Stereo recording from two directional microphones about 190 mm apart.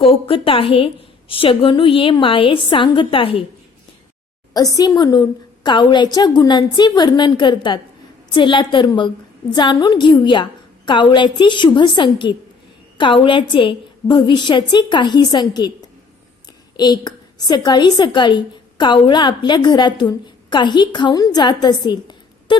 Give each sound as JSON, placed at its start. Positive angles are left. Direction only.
{"t": 0.0, "sound": "a woman's voice", "side_deg": 30}
{"t": 4.5, "sound": "a woman's voice", "side_deg": 20}
{"t": 16.7, "sound": "a woman's voice", "side_deg": 20}